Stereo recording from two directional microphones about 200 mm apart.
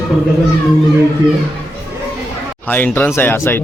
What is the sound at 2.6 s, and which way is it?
Speech, 10° left (ahead or behind).